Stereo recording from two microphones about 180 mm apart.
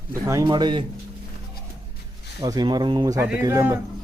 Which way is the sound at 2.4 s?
20° right (ahead or behind).